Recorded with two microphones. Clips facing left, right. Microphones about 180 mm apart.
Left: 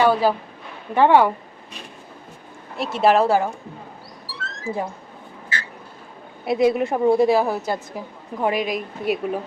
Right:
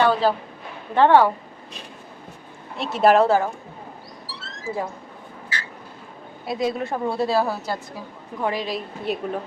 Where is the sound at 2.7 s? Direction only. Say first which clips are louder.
Right 1 dB; centre (ahead or behind).